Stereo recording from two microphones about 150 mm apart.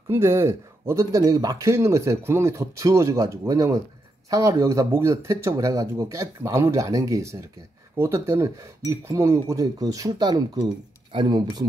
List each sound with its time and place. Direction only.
0.1 s speech: 20° right (ahead or behind)